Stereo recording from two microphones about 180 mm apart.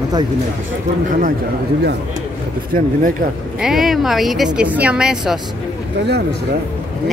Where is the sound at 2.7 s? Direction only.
50° right (ahead or behind).